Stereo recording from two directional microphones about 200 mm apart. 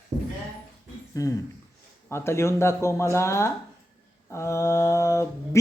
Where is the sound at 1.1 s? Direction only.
15° left (ahead or behind).